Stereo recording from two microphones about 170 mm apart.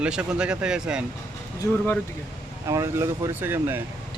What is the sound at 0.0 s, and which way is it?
Speech, 5° right (ahead or behind).